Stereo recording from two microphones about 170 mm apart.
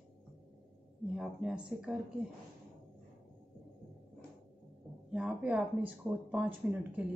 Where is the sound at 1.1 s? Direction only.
5° right (ahead or behind).